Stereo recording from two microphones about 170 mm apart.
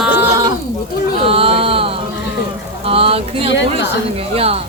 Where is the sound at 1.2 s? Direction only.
35° right (ahead or behind).